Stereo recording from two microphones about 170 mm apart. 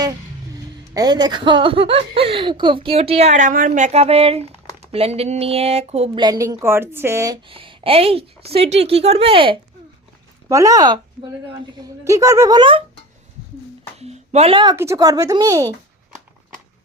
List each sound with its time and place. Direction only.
0.5 s speech: 20° right (ahead or behind); by 6.2 s 40° right (ahead or behind)
6.2 s a woman's voice: 20° right (ahead or behind)
7.4 s speech: 30° right (ahead or behind)
10.5 s speech: 20° right (ahead or behind)
14.0 s speech: 40° right (ahead or behind); by 15.7 s 20° right (ahead or behind)